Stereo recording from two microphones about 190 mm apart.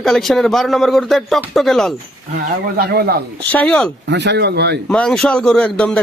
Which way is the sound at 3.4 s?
5° left (ahead or behind).